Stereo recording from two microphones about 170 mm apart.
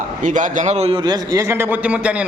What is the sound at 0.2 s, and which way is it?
A man's voice, 50° right (ahead or behind).